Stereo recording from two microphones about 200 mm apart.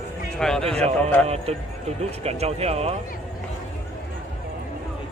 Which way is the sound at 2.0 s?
30° right (ahead or behind).